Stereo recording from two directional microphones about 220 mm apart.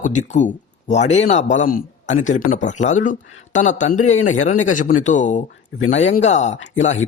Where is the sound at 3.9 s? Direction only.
65° left (ahead or behind).